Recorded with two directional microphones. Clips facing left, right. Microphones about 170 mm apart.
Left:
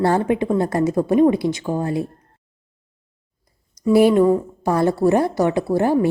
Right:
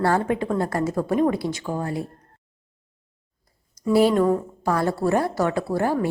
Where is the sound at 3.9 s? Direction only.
15° left (ahead or behind).